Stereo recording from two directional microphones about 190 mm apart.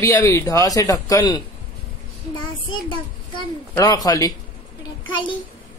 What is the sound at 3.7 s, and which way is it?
Speech, 20° left (ahead or behind).